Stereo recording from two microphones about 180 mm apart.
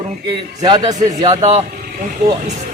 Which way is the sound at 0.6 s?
20° right (ahead or behind).